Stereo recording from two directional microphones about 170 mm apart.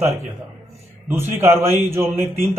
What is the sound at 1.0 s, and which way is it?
A man's voice, 15° right (ahead or behind).